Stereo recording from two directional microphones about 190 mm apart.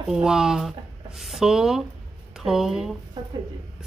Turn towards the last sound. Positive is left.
turn(degrees=-20)  # may be behind; listen again after turning